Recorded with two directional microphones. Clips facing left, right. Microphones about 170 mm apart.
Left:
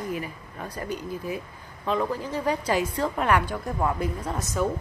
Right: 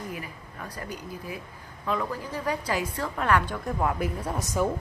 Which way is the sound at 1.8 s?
25° left (ahead or behind).